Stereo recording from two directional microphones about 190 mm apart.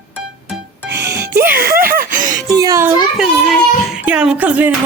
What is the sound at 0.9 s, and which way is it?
Music, 60° right (ahead or behind).